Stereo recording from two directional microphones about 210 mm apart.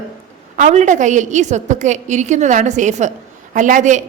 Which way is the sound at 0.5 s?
35° right (ahead or behind).